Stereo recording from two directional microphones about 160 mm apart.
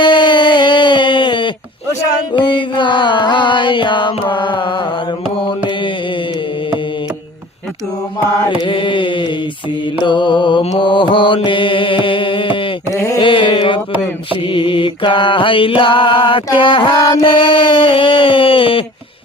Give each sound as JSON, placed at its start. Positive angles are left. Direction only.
{"t": 0.0, "sound": "a sound", "side_deg": 30}
{"t": 2.3, "sound": "music", "side_deg": 30}
{"t": 5.5, "sound": "mantra", "side_deg": 30}
{"t": 8.4, "sound": "mantra", "side_deg": 30}
{"t": 12.9, "sound": "mantra", "side_deg": 20}
{"t": 13.1, "sound": "mantra", "side_deg": 30}
{"t": 17.2, "sound": "mantra", "side_deg": 35}